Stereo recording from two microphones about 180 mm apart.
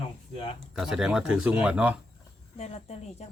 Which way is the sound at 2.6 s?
35° left (ahead or behind).